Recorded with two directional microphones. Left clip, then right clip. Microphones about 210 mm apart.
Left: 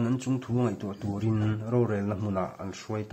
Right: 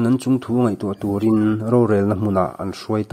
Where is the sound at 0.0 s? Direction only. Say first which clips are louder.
Right 11 dB; 35° right (ahead or behind).